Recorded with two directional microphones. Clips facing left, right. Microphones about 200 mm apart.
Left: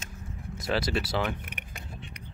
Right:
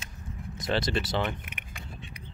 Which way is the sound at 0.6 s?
5° left (ahead or behind).